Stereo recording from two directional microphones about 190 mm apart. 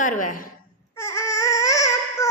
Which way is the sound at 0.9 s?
15° left (ahead or behind).